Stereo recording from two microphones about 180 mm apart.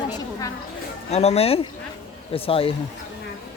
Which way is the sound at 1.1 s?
35° left (ahead or behind).